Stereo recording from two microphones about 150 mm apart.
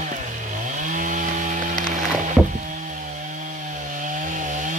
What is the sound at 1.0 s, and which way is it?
Chainsaw, 60° right (ahead or behind).